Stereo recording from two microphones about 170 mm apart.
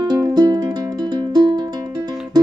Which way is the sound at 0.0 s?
25° right (ahead or behind).